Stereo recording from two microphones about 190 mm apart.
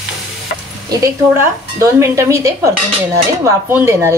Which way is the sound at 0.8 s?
15° right (ahead or behind).